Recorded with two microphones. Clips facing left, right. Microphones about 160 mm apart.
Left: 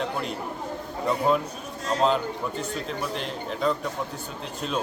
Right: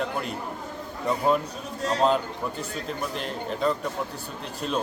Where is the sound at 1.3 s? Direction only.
Centre (ahead or behind).